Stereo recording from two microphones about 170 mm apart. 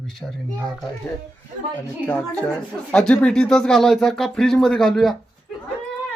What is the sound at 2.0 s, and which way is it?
Speech, 5° left (ahead or behind).